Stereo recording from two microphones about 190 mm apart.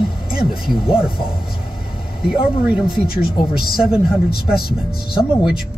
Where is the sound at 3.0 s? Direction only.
50° left (ahead or behind).